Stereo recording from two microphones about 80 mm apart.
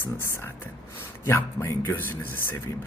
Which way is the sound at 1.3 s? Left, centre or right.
Left.